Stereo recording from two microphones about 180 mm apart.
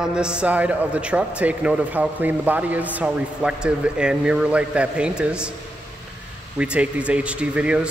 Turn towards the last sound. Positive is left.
turn(degrees=-5)  # may be behind; listen again after turning